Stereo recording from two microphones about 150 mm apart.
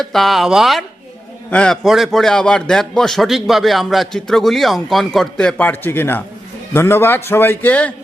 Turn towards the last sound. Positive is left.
turn(degrees=10)  # may be behind; listen again after turning